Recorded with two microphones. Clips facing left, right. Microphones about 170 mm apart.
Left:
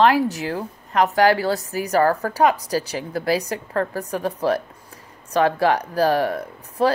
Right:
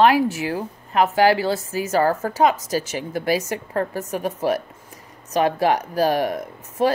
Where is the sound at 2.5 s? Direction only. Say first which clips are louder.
Even; 35° left (ahead or behind).